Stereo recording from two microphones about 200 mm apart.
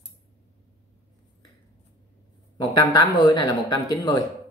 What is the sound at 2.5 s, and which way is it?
A woman's voice, 20° left (ahead or behind).